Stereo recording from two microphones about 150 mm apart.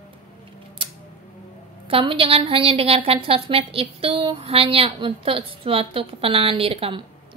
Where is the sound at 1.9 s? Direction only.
35° right (ahead or behind).